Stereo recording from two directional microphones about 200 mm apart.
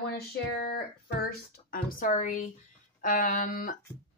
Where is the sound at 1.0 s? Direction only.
50° left (ahead or behind).